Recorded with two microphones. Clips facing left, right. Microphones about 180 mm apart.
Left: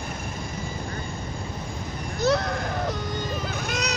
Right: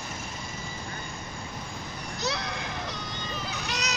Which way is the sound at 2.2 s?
50° left (ahead or behind).